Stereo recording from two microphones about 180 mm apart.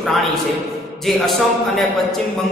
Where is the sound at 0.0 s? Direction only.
Centre (ahead or behind).